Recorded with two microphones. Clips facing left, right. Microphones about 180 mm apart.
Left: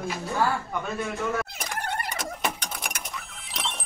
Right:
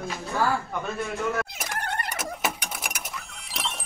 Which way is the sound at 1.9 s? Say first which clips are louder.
Left 1 dB; 5° left (ahead or behind).